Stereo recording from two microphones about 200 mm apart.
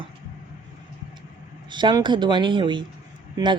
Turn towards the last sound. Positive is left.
turn(degrees=-20)  # may be behind; listen again after turning